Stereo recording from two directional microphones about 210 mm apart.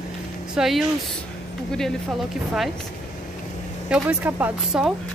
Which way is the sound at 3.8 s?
5° right (ahead or behind).